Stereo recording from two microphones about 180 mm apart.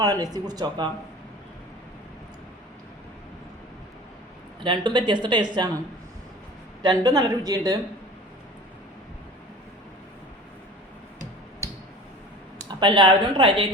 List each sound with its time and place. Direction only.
0.0 s speech: 20° right (ahead or behind)
4.6 s speech: 25° right (ahead or behind)
6.8 s speech: 25° right (ahead or behind)
12.8 s speech: 25° right (ahead or behind)